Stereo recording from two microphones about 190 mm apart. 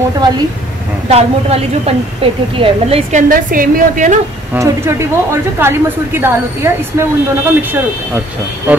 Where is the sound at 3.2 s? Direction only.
45° right (ahead or behind).